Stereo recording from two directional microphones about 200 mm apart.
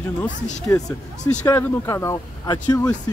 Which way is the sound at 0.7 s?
15° left (ahead or behind).